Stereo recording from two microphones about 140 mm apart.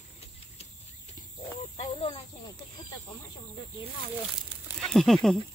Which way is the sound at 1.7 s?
45° left (ahead or behind).